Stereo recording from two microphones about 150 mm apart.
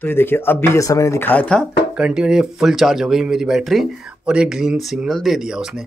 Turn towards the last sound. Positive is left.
turn(degrees=-5)  # may be behind; listen again after turning